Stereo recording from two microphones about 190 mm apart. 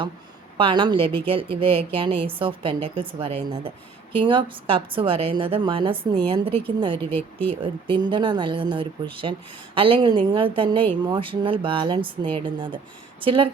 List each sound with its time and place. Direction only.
0.5 s a woman's voice: 25° right (ahead or behind)